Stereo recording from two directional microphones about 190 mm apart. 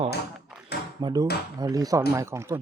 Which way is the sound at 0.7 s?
60° left (ahead or behind).